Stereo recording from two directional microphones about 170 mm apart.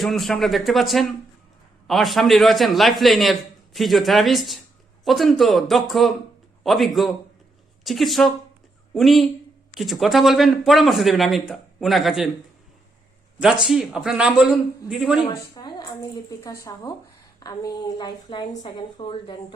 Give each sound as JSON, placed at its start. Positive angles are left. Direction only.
{"t": 0.0, "sound": "a man's voice", "side_deg": 0}
{"t": 13.4, "sound": "a man's voice", "side_deg": -5}
{"t": 15.5, "sound": "a sound", "side_deg": 25}
{"t": 16.4, "sound": "speech", "side_deg": 20}